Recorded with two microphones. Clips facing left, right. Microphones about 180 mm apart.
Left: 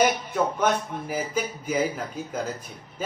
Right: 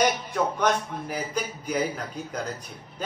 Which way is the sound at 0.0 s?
5° left (ahead or behind).